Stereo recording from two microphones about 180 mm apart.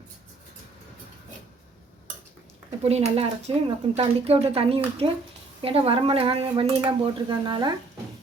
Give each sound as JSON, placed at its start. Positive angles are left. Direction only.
{"t": 2.8, "sound": "speech", "side_deg": -35}